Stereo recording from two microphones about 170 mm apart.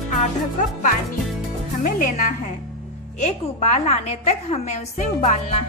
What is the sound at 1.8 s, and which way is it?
Speech, 55° left (ahead or behind).